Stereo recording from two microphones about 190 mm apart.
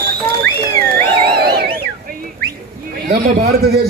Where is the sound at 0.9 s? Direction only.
55° right (ahead or behind).